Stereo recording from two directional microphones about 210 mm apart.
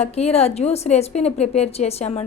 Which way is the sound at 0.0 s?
30° left (ahead or behind).